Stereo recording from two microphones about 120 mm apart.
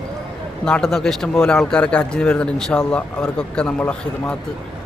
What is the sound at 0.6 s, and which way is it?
Speech, 5° left (ahead or behind).